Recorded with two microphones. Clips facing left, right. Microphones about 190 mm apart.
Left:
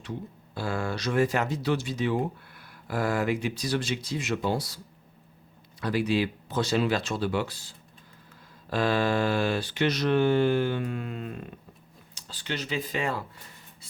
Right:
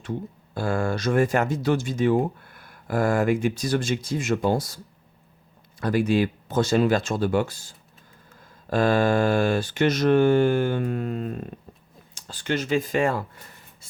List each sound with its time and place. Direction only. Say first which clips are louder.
0.0 s speech: right 5 dB; 50° right (ahead or behind)
5.8 s speech: right 4 dB; 50° right (ahead or behind)